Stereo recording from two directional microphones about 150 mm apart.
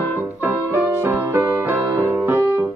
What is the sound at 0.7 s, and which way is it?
Music, 10° right (ahead or behind).